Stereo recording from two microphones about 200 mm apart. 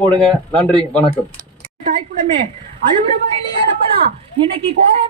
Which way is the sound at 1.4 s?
45° right (ahead or behind).